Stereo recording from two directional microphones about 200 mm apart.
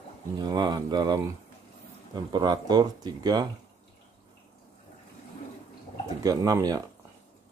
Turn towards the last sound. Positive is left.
turn(degrees=-20)  # may be behind; listen again after turning